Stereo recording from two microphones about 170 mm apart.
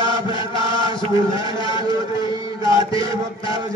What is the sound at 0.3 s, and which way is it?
Chant, 30° left (ahead or behind).